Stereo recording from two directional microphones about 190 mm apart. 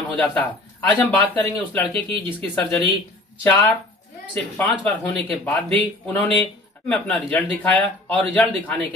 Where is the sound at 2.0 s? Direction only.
25° right (ahead or behind).